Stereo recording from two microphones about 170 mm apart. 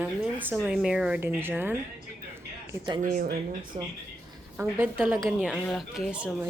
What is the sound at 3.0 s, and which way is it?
Speech, 60° right (ahead or behind).